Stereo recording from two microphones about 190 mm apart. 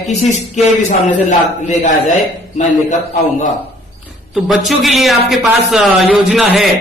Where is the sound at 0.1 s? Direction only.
35° left (ahead or behind).